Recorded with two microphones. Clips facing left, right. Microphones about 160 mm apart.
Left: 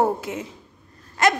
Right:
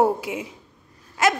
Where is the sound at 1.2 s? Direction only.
5° right (ahead or behind).